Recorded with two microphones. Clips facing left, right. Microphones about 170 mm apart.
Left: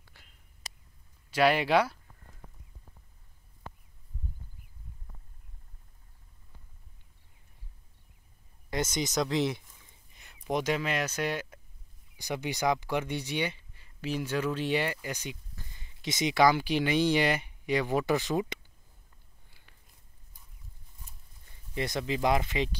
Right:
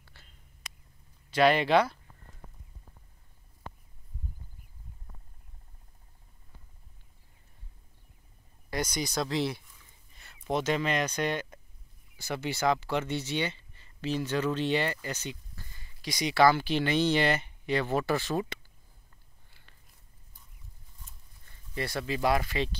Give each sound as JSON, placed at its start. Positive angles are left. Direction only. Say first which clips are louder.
{"t": 0.0, "sound": "whispering", "louder": "right 1 dB", "side_deg": 15}
{"t": 0.7, "sound": "a sound", "louder": "left 1 dB", "side_deg": 35}
{"t": 1.3, "sound": "speech", "louder": "right 1 dB", "side_deg": 10}
{"t": 8.6, "sound": "speech", "louder": "left 1 dB", "side_deg": 20}
{"t": 10.1, "sound": "a sound", "louder": "right 2 dB", "side_deg": 15}
{"t": 10.5, "sound": "speech", "louder": "right 1 dB", "side_deg": 10}
{"t": 21.5, "sound": "speech", "louder": "left 1 dB", "side_deg": 20}